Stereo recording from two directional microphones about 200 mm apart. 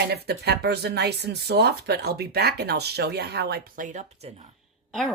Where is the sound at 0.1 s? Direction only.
55° right (ahead or behind); by 4.3 s 40° right (ahead or behind).